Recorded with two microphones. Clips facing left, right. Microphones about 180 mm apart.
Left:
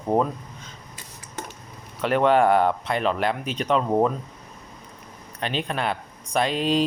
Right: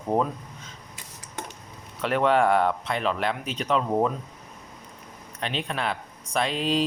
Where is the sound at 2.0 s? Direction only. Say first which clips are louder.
Left 3 dB; centre (ahead or behind).